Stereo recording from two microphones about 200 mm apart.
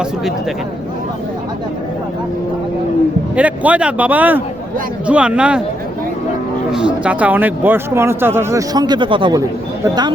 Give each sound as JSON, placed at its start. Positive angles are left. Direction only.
{"t": 3.3, "sound": "speech", "side_deg": -5}
{"t": 6.7, "sound": "speech", "side_deg": -5}